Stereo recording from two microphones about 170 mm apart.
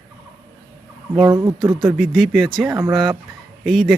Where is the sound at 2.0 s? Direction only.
Centre (ahead or behind).